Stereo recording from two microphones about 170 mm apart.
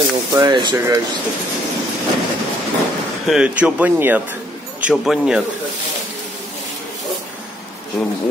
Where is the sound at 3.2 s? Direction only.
5° right (ahead or behind).